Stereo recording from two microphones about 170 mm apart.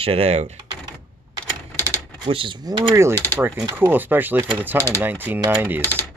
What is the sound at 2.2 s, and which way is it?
Speech, 30° right (ahead or behind).